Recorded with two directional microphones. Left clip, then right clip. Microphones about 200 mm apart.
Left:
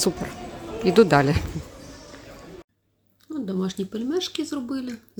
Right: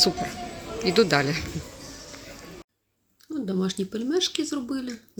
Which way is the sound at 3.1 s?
Centre (ahead or behind).